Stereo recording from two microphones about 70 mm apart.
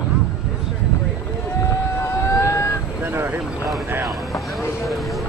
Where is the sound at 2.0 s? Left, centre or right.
Left.